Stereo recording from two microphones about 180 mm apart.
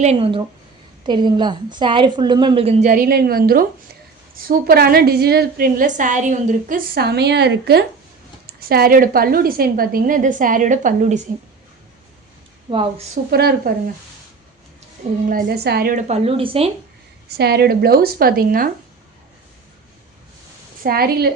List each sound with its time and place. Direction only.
0.0 s a woman's voice: 35° right (ahead or behind)
2.9 s a woman's voice: 55° right (ahead or behind)
12.7 s a woman's voice: 30° right (ahead or behind)
13.3 s a woman's voice: 60° right (ahead or behind)
15.3 s a woman's voice: 55° right (ahead or behind); by 16.7 s 30° right (ahead or behind)
17.2 s a woman's voice: 65° right (ahead or behind)
20.8 s a woman's voice: 55° right (ahead or behind)